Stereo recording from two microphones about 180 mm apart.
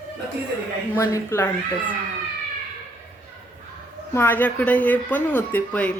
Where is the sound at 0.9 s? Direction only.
15° left (ahead or behind).